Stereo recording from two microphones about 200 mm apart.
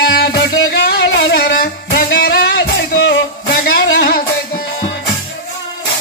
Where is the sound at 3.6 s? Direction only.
50° left (ahead or behind).